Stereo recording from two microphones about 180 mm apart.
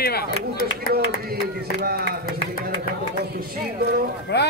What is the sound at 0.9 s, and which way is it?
Speech, 60° right (ahead or behind).